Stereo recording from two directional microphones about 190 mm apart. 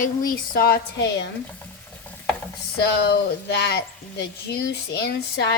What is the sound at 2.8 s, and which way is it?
Speech, 60° left (ahead or behind).